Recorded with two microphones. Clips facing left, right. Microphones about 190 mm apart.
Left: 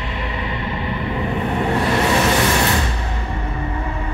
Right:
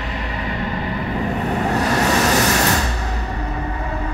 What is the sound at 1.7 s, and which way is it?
Vehicle, 40° right (ahead or behind).